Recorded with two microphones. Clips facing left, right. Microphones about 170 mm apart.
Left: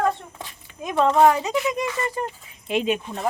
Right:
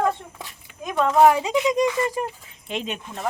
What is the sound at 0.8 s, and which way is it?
Speech, centre (ahead or behind).